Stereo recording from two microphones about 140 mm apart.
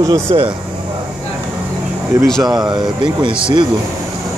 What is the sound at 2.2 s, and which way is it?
Speech, centre (ahead or behind).